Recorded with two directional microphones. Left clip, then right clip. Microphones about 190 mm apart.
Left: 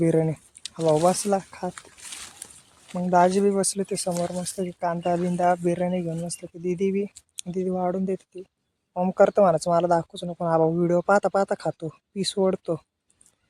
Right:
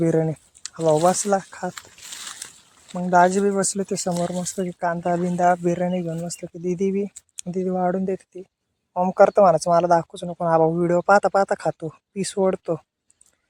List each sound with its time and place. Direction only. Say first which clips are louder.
0.0 s speech: right 1 dB; centre (ahead or behind)
0.8 s speech: right 2 dB; 30° right (ahead or behind)
1.0 s speech: right 3 dB; 5° right (ahead or behind)
1.7 s a sound: right 3 dB; 35° right (ahead or behind)
3.0 s speech: right 3 dB; 5° right (ahead or behind)